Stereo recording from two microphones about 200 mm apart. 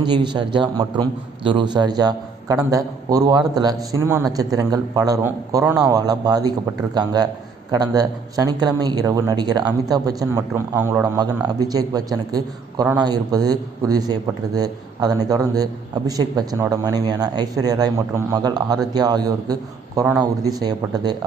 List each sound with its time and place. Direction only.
0.0 s a man's voice: 20° right (ahead or behind)